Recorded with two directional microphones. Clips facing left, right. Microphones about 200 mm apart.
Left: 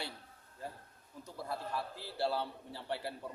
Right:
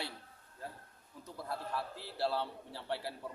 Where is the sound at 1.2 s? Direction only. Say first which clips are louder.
Left 1 dB; centre (ahead or behind).